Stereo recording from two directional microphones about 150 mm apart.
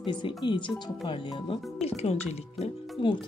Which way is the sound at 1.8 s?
45° left (ahead or behind).